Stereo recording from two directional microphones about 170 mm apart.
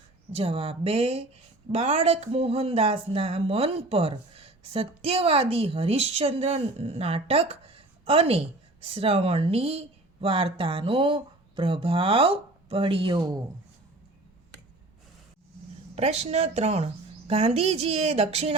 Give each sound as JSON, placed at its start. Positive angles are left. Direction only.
{"t": 0.3, "sound": "speech", "side_deg": -35}
{"t": 16.0, "sound": "speech", "side_deg": -40}